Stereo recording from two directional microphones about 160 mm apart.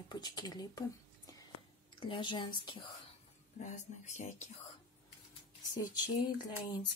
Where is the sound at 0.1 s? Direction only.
25° left (ahead or behind).